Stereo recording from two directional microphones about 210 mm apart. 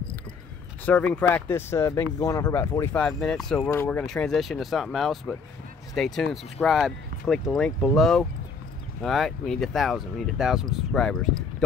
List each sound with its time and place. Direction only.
0.8 s speech: 5° left (ahead or behind)